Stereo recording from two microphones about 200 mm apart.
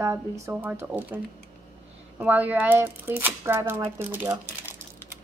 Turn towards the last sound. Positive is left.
turn(degrees=-10)  # may be behind; listen again after turning